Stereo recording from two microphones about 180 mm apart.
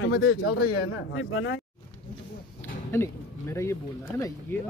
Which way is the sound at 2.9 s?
15° left (ahead or behind).